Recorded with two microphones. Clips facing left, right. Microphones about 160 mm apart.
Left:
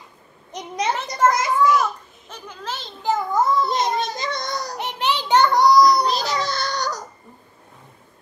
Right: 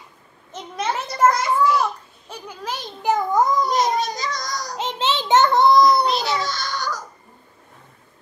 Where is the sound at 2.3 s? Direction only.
10° right (ahead or behind).